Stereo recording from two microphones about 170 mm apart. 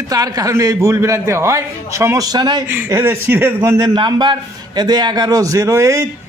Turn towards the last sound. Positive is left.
turn(degrees=-15)  # may be behind; listen again after turning